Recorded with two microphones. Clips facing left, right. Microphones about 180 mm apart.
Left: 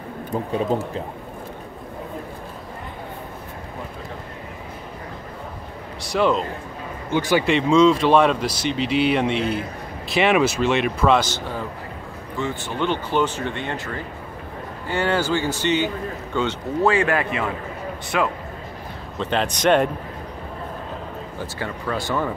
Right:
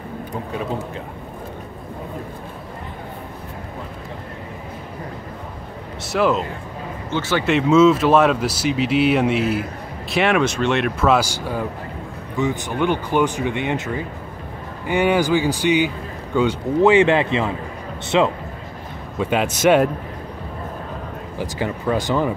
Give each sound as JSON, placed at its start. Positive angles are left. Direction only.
{"t": 6.1, "sound": "speech", "side_deg": -5}
{"t": 7.1, "sound": "speech", "side_deg": 15}
{"t": 7.4, "sound": "speech", "side_deg": -5}
{"t": 19.1, "sound": "speech", "side_deg": -10}
{"t": 21.4, "sound": "speech", "side_deg": -15}